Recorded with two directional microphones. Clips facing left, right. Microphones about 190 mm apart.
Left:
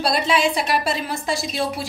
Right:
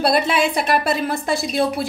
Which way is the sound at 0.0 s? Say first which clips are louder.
Right 2 dB; 55° right (ahead or behind).